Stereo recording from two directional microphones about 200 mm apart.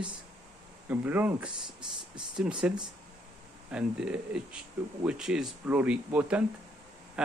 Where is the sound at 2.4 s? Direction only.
5° right (ahead or behind).